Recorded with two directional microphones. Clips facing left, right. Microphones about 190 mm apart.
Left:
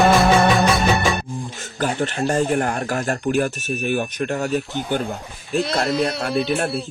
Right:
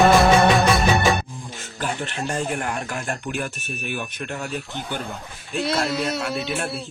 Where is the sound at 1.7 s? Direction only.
40° left (ahead or behind).